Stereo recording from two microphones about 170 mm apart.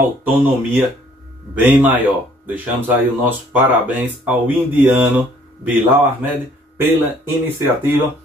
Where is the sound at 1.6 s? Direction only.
10° right (ahead or behind).